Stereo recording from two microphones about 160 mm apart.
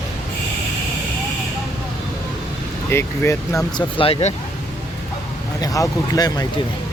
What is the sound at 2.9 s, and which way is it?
Speech, 15° left (ahead or behind).